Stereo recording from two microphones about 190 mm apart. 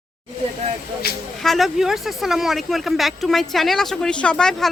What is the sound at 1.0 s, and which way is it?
Speech, 55° left (ahead or behind).